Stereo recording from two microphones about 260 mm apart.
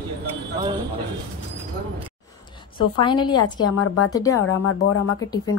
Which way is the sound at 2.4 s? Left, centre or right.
Centre.